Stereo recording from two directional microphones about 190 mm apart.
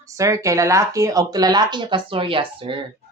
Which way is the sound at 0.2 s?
15° right (ahead or behind).